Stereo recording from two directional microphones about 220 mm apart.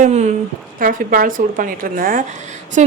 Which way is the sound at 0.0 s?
30° right (ahead or behind).